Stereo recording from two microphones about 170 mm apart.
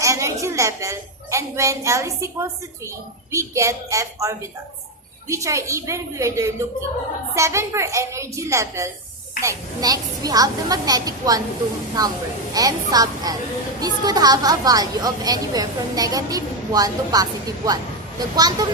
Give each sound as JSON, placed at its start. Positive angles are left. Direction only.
{"t": 0.0, "sound": "a woman's voice", "side_deg": -15}